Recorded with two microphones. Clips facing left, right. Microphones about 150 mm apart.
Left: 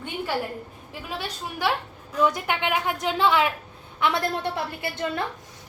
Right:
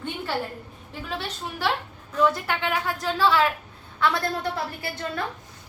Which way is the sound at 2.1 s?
15° left (ahead or behind).